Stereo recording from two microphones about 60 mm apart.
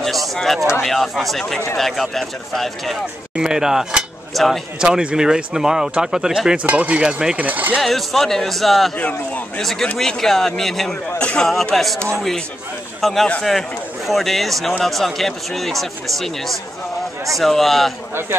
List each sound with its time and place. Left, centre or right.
0.0 s speech: centre
3.3 s speech: centre
4.3 s speech: centre
4.7 s speech: centre
6.6 s speech: right
7.3 s speech: right
7.8 s speech: centre
8.9 s speech: left
9.6 s speech: centre
11.1 s a man's voice: centre
11.7 s speech: centre
13.0 s speech: centre